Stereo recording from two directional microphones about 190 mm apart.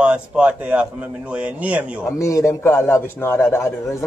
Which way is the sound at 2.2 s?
15° left (ahead or behind).